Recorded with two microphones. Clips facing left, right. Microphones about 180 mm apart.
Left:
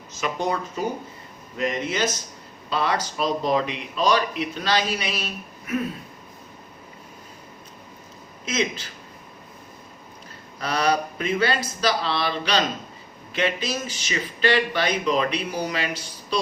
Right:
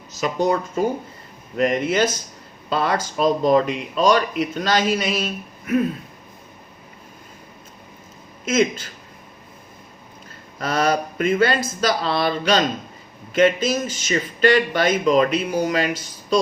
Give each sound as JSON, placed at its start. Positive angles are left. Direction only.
{"t": 0.1, "sound": "speech", "side_deg": -40}
{"t": 8.4, "sound": "speech", "side_deg": -50}
{"t": 10.6, "sound": "speech", "side_deg": -50}